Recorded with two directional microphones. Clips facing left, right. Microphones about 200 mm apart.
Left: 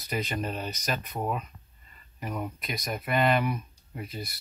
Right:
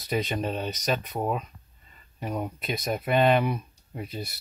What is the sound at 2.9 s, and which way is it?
Speech, 25° right (ahead or behind).